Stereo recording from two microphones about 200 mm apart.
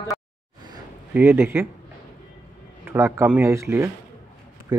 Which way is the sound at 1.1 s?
10° right (ahead or behind).